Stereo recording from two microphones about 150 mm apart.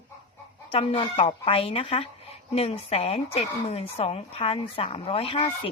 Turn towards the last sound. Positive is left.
turn(degrees=40)  # may be behind; listen again after turning